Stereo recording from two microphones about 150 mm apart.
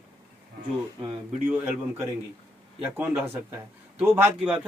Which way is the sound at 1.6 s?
10° right (ahead or behind).